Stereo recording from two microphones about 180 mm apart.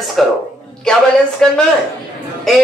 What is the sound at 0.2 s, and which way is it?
Speech, centre (ahead or behind).